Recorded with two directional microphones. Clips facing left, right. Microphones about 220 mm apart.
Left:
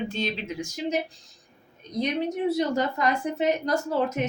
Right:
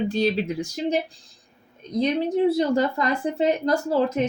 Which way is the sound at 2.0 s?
30° right (ahead or behind).